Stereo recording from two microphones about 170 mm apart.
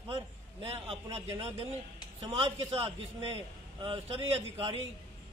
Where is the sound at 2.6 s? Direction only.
35° right (ahead or behind).